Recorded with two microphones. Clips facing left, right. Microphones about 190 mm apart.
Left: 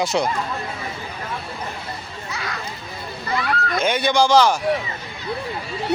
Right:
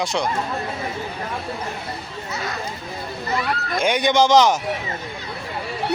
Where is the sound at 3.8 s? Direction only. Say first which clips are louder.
Right 2 dB; 15° right (ahead or behind).